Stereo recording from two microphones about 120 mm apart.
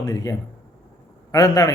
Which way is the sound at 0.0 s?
30° left (ahead or behind).